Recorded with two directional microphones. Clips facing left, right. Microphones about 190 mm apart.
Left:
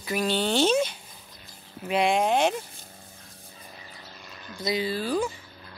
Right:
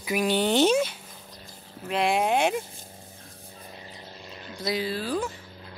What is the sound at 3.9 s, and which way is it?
Vehicle, 25° right (ahead or behind).